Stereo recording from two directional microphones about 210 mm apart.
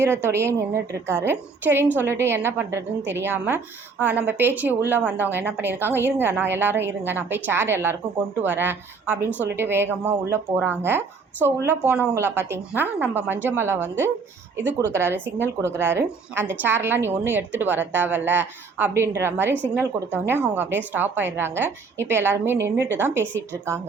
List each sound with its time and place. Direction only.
0.0 s a woman's voice: 10° right (ahead or behind)